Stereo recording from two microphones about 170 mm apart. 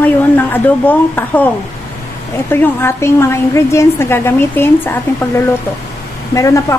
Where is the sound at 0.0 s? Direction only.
10° left (ahead or behind).